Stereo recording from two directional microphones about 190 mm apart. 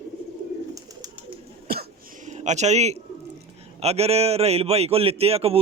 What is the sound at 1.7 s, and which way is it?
Cough, 50° right (ahead or behind).